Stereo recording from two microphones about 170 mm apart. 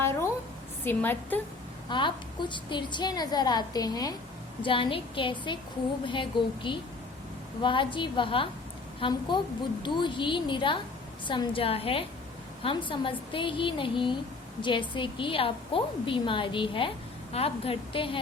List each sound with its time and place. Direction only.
0.0 s a sound: 15° left (ahead or behind)
0.9 s a woman's voice: 10° left (ahead or behind)
1.9 s a woman's voice: 25° left (ahead or behind)